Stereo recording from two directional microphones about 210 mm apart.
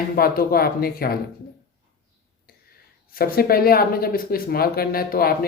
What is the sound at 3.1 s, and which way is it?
Speech, 45° left (ahead or behind).